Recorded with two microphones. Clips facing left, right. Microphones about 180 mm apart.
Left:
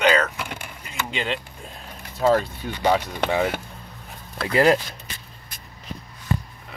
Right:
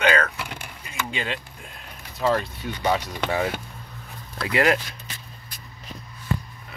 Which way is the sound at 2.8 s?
25° left (ahead or behind).